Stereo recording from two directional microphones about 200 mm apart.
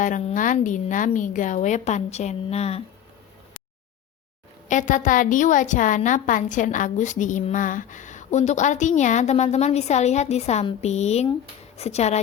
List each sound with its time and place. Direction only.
0.0 s a woman's voice: 40° left (ahead or behind)
4.7 s a woman's voice: 40° left (ahead or behind)